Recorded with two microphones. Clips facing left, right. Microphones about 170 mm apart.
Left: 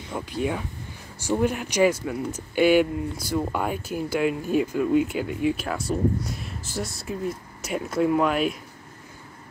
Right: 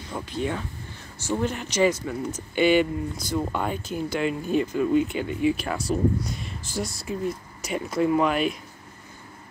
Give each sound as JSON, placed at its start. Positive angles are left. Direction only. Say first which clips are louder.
{"t": 0.1, "sound": "speech", "louder": "left 1 dB", "side_deg": 10}